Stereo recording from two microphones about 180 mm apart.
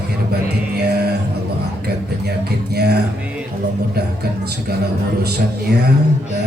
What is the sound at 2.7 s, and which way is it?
Music, 65° right (ahead or behind).